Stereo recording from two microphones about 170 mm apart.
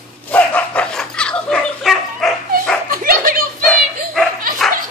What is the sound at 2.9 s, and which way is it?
Dog, 55° right (ahead or behind).